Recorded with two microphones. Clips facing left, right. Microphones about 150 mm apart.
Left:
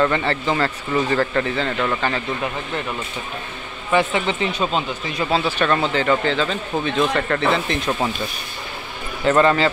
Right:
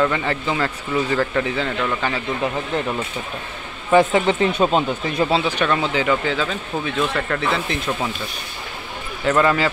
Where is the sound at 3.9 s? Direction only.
40° right (ahead or behind).